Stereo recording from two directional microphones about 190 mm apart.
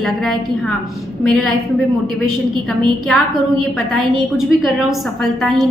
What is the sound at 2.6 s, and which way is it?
A woman's voice, centre (ahead or behind).